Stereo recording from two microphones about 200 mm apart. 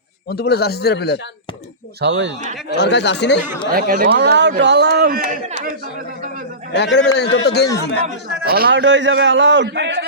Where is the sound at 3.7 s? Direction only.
45° right (ahead or behind).